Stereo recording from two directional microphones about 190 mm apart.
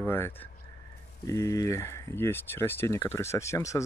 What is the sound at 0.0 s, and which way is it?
Speech, 10° left (ahead or behind).